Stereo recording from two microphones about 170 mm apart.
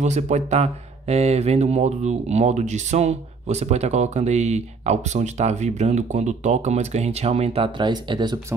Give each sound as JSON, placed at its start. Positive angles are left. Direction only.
{"t": 0.0, "sound": "speech", "side_deg": -40}